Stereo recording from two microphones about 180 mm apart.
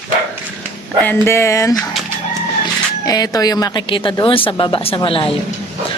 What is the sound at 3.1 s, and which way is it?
A woman's voice, 20° left (ahead or behind).